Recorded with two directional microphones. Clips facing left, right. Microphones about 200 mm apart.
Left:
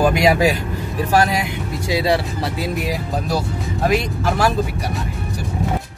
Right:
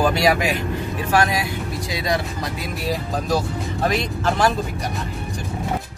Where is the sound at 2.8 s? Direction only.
10° left (ahead or behind).